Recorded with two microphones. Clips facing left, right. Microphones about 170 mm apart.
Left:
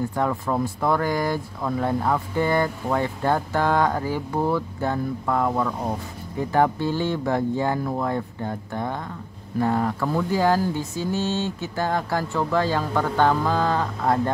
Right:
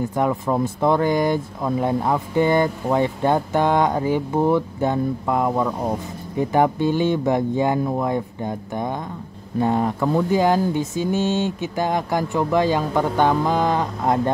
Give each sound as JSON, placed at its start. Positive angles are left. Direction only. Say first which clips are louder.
{"t": 0.1, "sound": "speech", "louder": "right 3 dB", "side_deg": -20}